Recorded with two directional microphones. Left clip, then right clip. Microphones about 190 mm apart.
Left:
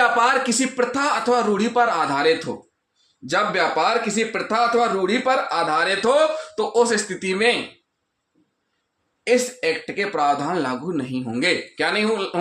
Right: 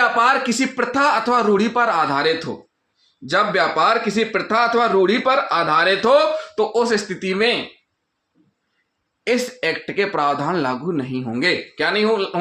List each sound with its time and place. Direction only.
0.0 s speech: 25° right (ahead or behind)
6.6 s speech: 30° right (ahead or behind)
9.2 s speech: 35° right (ahead or behind); by 12.4 s 20° right (ahead or behind)